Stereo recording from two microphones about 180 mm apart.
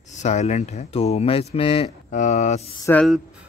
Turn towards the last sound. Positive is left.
turn(degrees=-5)  # may be behind; listen again after turning